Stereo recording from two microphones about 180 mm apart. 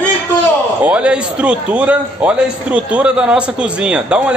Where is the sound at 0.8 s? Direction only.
5° right (ahead or behind).